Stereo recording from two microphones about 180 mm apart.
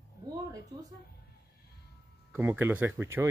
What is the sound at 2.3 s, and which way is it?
Speech, 10° right (ahead or behind).